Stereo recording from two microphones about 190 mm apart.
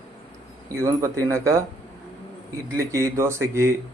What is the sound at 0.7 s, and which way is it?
Speech, 15° right (ahead or behind).